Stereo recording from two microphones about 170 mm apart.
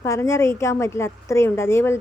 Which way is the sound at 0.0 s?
15° left (ahead or behind).